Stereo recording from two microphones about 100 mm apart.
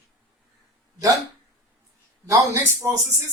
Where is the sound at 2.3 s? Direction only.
30° right (ahead or behind).